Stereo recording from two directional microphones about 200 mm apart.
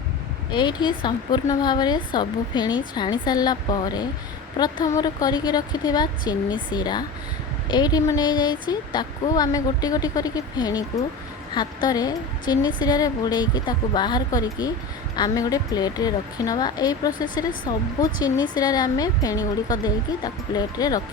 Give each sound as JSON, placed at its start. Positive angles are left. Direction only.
{"t": 0.5, "sound": "a woman's voice", "side_deg": 20}